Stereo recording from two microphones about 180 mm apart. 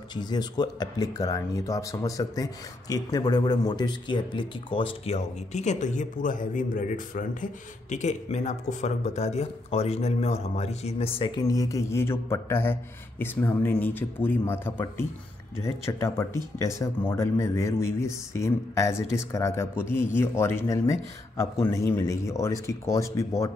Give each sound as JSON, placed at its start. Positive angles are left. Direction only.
{"t": 0.1, "sound": "speech", "side_deg": 25}